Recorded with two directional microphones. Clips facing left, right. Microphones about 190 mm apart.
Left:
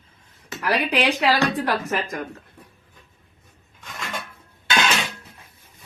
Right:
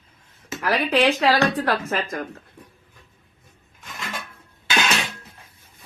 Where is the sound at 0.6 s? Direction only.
15° left (ahead or behind).